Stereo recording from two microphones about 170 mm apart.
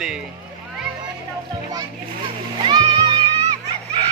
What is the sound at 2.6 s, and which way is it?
Music, 30° right (ahead or behind).